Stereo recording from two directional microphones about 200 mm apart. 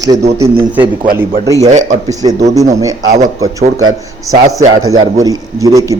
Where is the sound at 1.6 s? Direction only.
35° right (ahead or behind).